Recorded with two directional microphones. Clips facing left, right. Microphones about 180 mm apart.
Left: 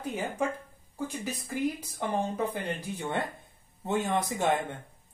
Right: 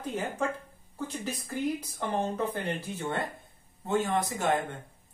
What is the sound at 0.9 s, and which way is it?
Speech, 10° left (ahead or behind).